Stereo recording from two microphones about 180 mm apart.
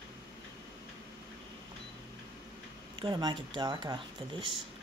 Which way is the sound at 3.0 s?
25° right (ahead or behind).